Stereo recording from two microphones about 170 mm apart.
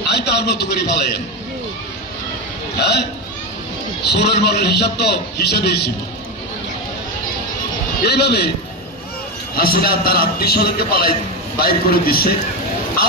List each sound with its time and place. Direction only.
0.1 s a man's voice: 70° left (ahead or behind)
2.8 s a man's voice: 75° left (ahead or behind)
8.0 s a man's voice: 70° left (ahead or behind)
9.6 s a man's voice: 60° left (ahead or behind)